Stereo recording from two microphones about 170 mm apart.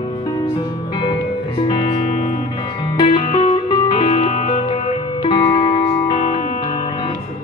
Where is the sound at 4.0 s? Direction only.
40° left (ahead or behind).